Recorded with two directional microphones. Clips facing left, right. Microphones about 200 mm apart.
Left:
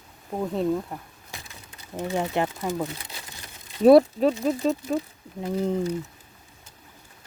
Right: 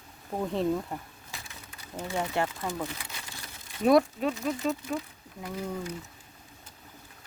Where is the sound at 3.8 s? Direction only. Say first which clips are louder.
Left 7 dB; 35° left (ahead or behind).